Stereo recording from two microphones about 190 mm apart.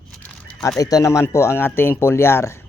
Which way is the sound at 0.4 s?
5° left (ahead or behind).